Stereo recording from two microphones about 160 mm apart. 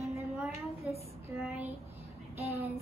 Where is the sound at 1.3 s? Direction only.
5° right (ahead or behind).